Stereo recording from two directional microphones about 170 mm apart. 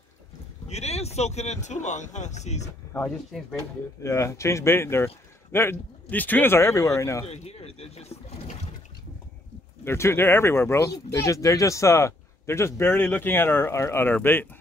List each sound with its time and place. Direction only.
0.7 s speech: 40° left (ahead or behind)
2.9 s speech: 10° left (ahead or behind)
7.2 s speech: 35° left (ahead or behind)
9.8 s speech: 15° left (ahead or behind)